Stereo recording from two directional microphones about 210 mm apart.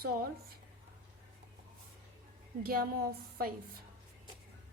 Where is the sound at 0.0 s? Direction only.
45° right (ahead or behind).